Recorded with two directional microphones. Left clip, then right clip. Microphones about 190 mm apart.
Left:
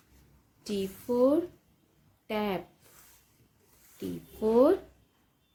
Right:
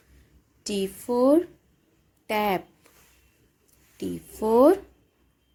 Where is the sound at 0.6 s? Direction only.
45° right (ahead or behind).